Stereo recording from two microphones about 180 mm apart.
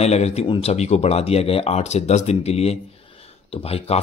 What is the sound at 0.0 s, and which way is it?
Speech, 35° left (ahead or behind).